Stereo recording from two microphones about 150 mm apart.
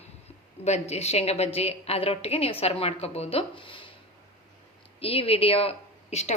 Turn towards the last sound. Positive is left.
turn(degrees=50)  # may be behind; listen again after turning